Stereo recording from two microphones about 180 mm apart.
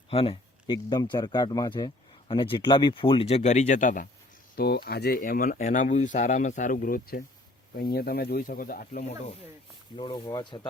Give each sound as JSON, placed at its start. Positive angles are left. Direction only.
{"t": 0.1, "sound": "a man's voice", "side_deg": 30}
{"t": 4.5, "sound": "speech", "side_deg": 60}
{"t": 9.9, "sound": "a man's voice", "side_deg": 30}